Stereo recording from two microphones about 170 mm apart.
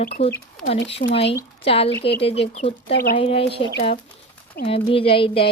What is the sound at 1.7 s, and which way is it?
Speech, 35° left (ahead or behind).